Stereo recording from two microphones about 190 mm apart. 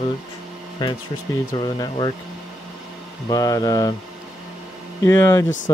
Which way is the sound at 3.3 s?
20° left (ahead or behind).